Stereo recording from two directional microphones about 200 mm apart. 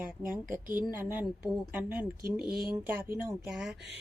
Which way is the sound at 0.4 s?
40° right (ahead or behind).